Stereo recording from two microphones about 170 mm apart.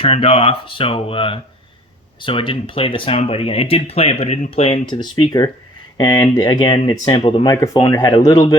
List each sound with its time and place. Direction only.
0.0 s speech: 35° left (ahead or behind)
7.5 s speech: 20° left (ahead or behind)